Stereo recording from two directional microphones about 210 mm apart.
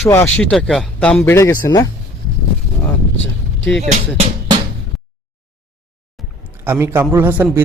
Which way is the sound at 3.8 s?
35° right (ahead or behind).